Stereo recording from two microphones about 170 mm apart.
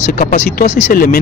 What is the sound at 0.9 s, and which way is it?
Speech, 60° left (ahead or behind).